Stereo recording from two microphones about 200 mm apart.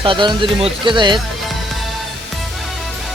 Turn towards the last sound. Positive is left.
turn(degrees=-25)  # may be behind; listen again after turning